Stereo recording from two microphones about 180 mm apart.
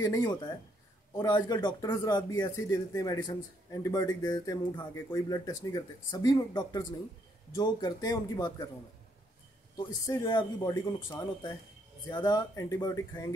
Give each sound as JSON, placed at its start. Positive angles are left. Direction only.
{"t": 0.0, "sound": "speech", "side_deg": 20}
{"t": 9.8, "sound": "speech", "side_deg": 20}